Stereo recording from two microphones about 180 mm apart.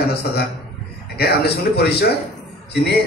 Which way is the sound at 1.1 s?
65° left (ahead or behind).